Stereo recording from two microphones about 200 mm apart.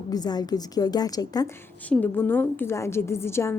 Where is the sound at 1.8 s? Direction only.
10° left (ahead or behind).